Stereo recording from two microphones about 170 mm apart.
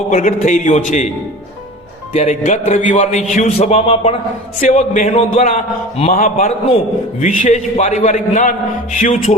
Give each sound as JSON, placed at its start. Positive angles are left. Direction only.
{"t": 0.1, "sound": "a man's voice", "side_deg": 45}
{"t": 2.1, "sound": "a man's voice", "side_deg": 45}